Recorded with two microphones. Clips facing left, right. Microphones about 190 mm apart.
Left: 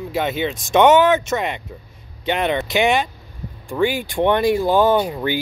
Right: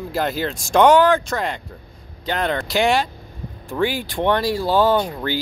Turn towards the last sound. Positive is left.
turn(degrees=10)  # may be behind; listen again after turning